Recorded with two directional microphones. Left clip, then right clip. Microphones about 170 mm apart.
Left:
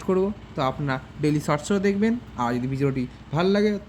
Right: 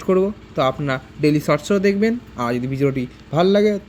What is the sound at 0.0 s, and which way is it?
A man's voice, 25° right (ahead or behind).